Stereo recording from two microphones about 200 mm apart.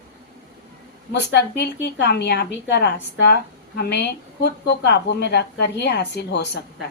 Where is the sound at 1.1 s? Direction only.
60° left (ahead or behind).